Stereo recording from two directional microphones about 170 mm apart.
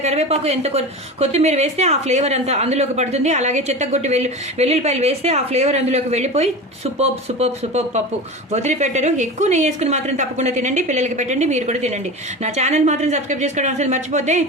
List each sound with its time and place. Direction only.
0.0 s a woman's voice: 40° right (ahead or behind)